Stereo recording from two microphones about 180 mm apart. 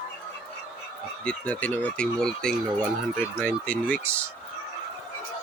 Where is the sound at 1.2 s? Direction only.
10° left (ahead or behind).